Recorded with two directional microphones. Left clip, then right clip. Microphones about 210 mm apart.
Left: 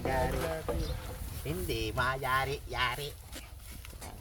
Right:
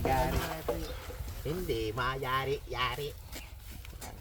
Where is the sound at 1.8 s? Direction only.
40° left (ahead or behind).